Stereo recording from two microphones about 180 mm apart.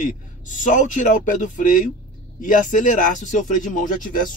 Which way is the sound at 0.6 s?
45° left (ahead or behind).